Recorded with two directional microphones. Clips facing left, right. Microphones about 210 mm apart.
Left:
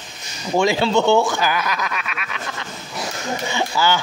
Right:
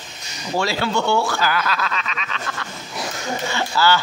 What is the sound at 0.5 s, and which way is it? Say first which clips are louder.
Speech: left 5 dB; 20° left (ahead or behind).